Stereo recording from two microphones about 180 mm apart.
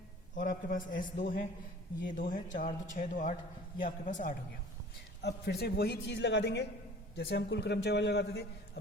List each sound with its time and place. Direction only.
0.3 s a man's voice: 45° left (ahead or behind)
5.2 s a man's voice: 65° left (ahead or behind)